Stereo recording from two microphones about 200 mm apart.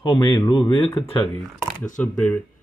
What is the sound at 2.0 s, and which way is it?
Speech, 5° left (ahead or behind).